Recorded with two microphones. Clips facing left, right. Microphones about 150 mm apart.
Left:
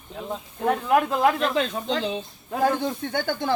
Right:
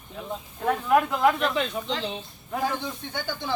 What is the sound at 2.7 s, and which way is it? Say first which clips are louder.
Speech: left 6 dB; 50° left (ahead or behind).